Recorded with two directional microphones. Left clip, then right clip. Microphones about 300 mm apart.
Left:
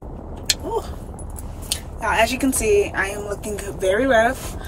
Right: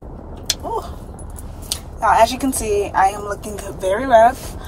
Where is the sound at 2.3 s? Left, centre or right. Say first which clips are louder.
Left 2 dB; centre.